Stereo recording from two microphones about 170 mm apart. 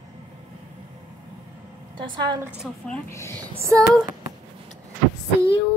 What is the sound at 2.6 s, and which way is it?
Speech, 5° left (ahead or behind).